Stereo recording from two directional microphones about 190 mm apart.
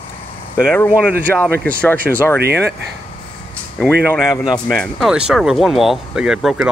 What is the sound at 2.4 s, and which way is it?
Speech, 60° right (ahead or behind).